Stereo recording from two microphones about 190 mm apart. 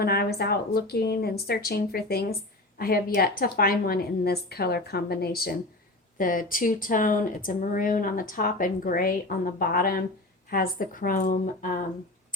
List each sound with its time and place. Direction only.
0.0 s speech: 55° left (ahead or behind)